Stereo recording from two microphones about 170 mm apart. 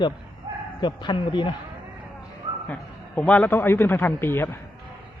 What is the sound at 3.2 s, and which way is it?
Speech, 10° left (ahead or behind).